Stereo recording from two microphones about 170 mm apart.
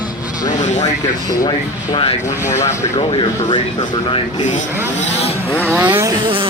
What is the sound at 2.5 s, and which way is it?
Speech, 45° left (ahead or behind).